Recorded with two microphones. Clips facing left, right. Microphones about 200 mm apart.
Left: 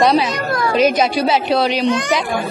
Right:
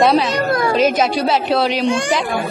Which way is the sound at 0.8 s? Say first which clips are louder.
Left 4 dB; centre (ahead or behind).